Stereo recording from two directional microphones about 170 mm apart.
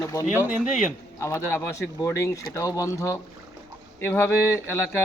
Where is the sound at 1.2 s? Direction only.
15° left (ahead or behind).